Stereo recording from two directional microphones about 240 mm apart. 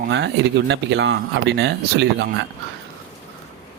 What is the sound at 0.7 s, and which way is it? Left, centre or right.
Speech, right.